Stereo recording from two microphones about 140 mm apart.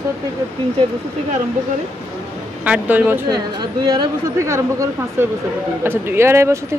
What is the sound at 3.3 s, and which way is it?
Speech, 30° right (ahead or behind).